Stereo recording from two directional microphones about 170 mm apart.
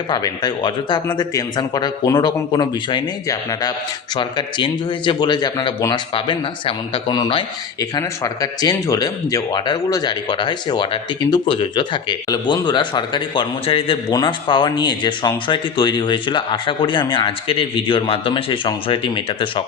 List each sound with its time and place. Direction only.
0.1 s speech: 20° left (ahead or behind)